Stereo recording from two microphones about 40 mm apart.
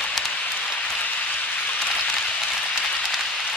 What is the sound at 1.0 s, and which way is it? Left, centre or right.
Rain on surface, left.